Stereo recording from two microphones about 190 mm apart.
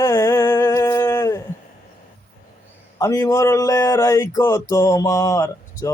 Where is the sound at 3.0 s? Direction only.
15° left (ahead or behind).